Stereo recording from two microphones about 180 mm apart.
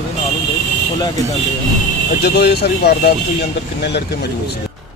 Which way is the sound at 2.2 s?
65° left (ahead or behind).